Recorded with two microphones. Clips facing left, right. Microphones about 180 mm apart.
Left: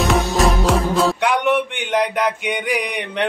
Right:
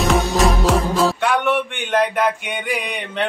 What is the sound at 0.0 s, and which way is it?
Music, centre (ahead or behind).